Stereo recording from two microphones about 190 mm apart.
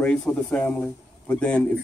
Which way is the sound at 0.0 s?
5° left (ahead or behind).